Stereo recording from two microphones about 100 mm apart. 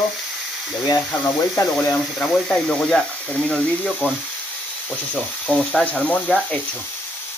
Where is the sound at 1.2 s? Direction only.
15° left (ahead or behind).